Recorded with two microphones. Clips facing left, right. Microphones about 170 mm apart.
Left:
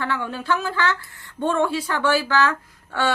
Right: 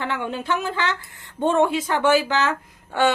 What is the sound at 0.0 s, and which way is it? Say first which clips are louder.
Speech: even; 20° right (ahead or behind).